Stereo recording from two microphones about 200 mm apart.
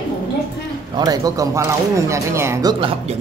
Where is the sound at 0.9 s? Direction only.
20° right (ahead or behind).